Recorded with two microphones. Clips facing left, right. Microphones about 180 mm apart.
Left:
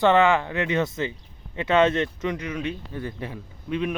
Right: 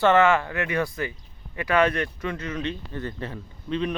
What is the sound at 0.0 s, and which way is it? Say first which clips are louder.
Speech: even; 15° left (ahead or behind).